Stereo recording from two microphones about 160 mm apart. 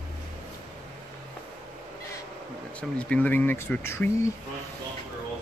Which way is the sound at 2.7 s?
10° left (ahead or behind).